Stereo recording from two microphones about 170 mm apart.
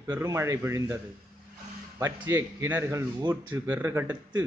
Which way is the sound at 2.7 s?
15° right (ahead or behind).